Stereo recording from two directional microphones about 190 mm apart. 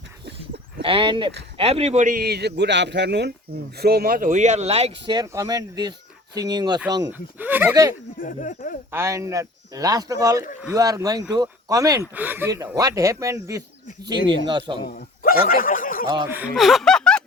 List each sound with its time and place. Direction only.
0.8 s a man's voice: 30° right (ahead or behind)
5.1 s speech: 15° right (ahead or behind)
8.2 s speech: 45° left (ahead or behind)
8.9 s speech: 15° right (ahead or behind)
14.8 s speech: 50° left (ahead or behind)
16.0 s speech: 20° right (ahead or behind)
16.4 s speech: centre (ahead or behind)